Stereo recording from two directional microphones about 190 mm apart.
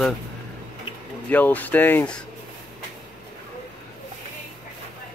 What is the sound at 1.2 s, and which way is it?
Speech, 10° left (ahead or behind).